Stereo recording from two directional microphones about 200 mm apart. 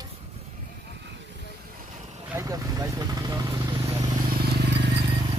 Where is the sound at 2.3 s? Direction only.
15° right (ahead or behind).